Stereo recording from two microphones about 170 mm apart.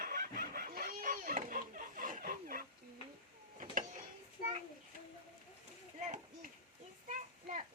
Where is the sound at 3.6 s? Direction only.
45° right (ahead or behind).